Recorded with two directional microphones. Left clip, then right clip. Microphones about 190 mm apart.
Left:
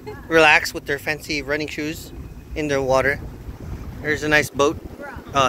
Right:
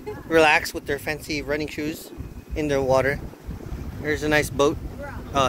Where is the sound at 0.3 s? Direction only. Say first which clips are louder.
Left 3 dB; 5° right (ahead or behind).